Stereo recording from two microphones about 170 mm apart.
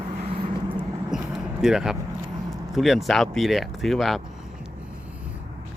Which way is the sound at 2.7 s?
Centre (ahead or behind).